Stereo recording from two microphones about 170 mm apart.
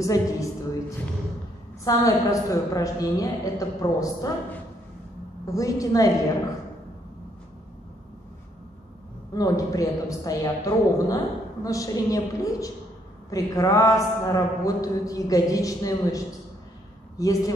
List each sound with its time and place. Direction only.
0.0 s a man's voice: 20° left (ahead or behind)
5.5 s a man's voice: 20° left (ahead or behind)
9.3 s a man's voice: 20° left (ahead or behind)
17.2 s a man's voice: 20° left (ahead or behind)